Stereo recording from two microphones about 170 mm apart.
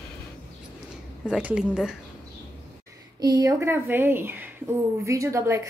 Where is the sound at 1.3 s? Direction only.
5° right (ahead or behind).